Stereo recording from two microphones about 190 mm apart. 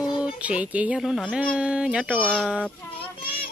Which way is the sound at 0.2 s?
5° right (ahead or behind).